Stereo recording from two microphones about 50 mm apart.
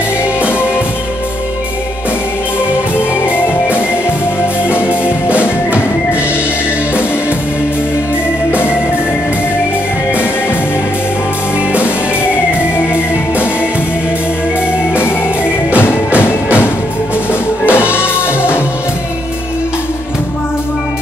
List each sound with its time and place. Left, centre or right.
0.4 s music: left
3.0 s music: left
11.8 s music: left
15.7 s music: left
17.3 s music: left